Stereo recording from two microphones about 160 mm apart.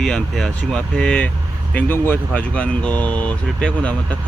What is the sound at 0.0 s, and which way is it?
Speech, centre (ahead or behind).